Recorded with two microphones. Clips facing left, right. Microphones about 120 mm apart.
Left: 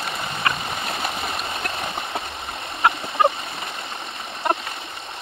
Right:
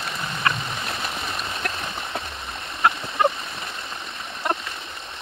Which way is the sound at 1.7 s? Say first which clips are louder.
Left 3 dB; 50° left (ahead or behind).